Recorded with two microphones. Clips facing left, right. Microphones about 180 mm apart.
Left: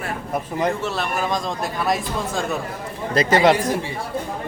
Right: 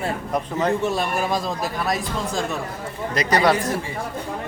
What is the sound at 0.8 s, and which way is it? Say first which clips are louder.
Speech: right 1 dB; 15° right (ahead or behind).